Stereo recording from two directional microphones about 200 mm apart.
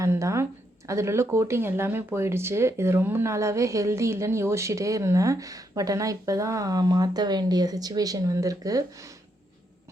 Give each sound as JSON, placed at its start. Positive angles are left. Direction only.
{"t": 0.0, "sound": "speech", "side_deg": -15}